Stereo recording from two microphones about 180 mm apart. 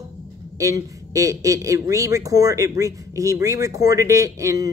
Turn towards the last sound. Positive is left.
turn(degrees=-20)  # may be behind; listen again after turning